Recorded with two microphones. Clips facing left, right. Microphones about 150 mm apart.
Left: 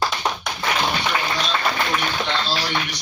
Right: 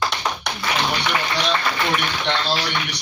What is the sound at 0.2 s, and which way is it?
Tap, 30° left (ahead or behind).